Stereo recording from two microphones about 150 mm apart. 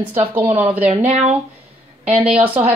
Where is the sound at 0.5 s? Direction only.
10° right (ahead or behind).